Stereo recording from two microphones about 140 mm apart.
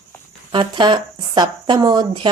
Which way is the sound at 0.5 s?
35° right (ahead or behind).